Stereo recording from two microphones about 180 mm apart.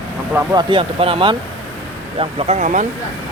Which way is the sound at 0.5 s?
30° right (ahead or behind).